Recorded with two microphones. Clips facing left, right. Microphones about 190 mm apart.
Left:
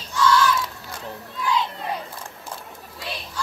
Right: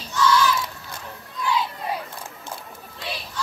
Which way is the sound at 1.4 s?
Centre (ahead or behind).